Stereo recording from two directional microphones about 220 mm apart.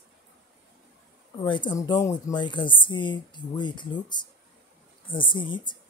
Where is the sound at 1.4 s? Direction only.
20° left (ahead or behind).